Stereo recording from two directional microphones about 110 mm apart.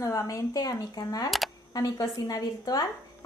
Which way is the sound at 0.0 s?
30° left (ahead or behind).